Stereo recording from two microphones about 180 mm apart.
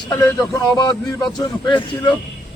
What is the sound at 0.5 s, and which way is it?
Speech, 20° left (ahead or behind).